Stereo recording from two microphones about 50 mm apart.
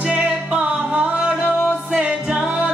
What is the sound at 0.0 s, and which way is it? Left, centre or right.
Music, right.